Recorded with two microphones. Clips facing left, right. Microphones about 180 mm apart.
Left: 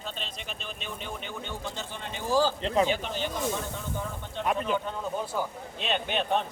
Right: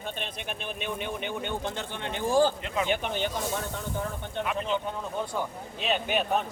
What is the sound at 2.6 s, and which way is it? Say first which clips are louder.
Speech: left 5 dB; 30° left (ahead or behind).